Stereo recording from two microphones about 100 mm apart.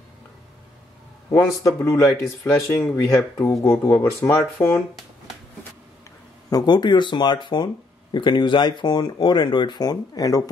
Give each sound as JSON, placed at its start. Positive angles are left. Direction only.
{"t": 1.3, "sound": "speech", "side_deg": 30}
{"t": 6.5, "sound": "speech", "side_deg": 45}